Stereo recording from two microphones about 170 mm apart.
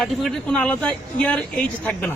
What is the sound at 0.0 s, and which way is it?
Speech, centre (ahead or behind).